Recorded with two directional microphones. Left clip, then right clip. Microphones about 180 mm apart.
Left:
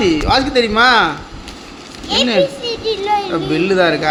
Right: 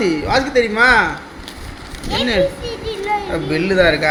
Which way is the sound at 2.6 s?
75° left (ahead or behind).